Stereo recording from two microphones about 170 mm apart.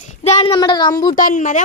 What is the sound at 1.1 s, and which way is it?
Speech, 50° left (ahead or behind).